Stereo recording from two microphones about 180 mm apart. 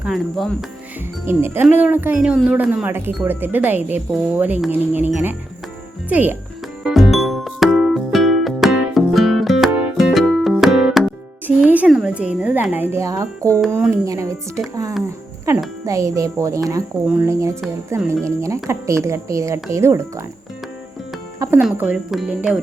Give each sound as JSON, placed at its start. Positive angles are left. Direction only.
{"t": 0.0, "sound": "speech", "side_deg": 0}
{"t": 1.2, "sound": "speech", "side_deg": -15}
{"t": 6.8, "sound": "music", "side_deg": 0}
{"t": 13.7, "sound": "speech", "side_deg": -15}
{"t": 21.3, "sound": "music", "side_deg": -20}
{"t": 21.6, "sound": "speech", "side_deg": -5}